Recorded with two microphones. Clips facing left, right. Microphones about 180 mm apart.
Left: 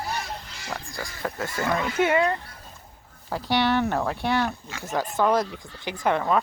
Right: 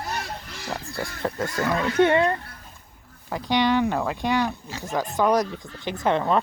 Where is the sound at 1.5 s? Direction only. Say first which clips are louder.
Right 3 dB; 5° left (ahead or behind).